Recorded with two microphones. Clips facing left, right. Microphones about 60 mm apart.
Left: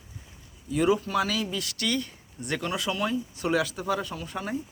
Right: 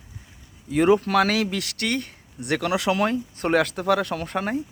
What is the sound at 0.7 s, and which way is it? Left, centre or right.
Speech, right.